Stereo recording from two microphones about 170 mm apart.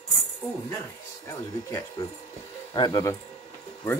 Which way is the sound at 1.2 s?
20° left (ahead or behind).